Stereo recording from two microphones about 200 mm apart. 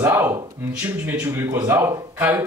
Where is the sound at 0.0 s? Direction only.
10° right (ahead or behind).